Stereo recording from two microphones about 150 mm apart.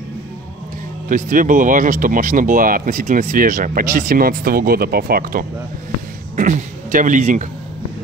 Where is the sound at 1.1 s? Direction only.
60° right (ahead or behind).